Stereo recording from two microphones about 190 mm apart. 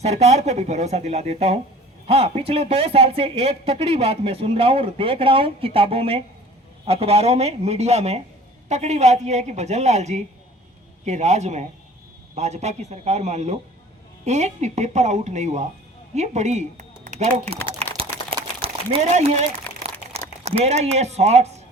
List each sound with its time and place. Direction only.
0.0 s a woman's voice: 35° right (ahead or behind)
17.9 s a sound: 30° right (ahead or behind)
20.4 s a woman's voice: 35° right (ahead or behind)